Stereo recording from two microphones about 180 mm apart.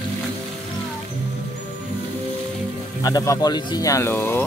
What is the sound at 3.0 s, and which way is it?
Speech, 20° left (ahead or behind).